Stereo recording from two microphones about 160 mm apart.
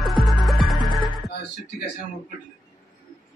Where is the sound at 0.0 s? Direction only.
Centre (ahead or behind).